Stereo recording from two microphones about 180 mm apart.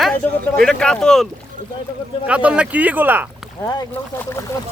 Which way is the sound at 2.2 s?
5° right (ahead or behind).